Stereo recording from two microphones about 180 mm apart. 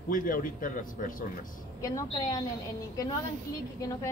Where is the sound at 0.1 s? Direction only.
50° left (ahead or behind).